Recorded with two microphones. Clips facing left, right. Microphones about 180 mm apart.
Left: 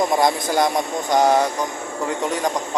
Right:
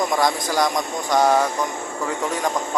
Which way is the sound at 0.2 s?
25° left (ahead or behind).